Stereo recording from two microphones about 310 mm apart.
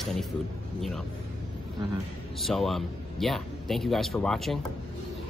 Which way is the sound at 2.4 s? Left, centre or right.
Centre.